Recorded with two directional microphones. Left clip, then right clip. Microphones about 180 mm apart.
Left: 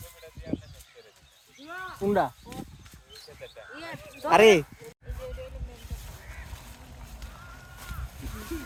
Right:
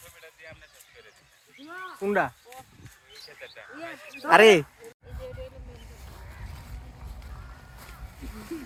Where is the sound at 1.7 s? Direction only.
50° right (ahead or behind).